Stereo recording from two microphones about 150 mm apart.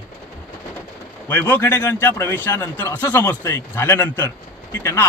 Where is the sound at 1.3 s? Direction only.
15° left (ahead or behind).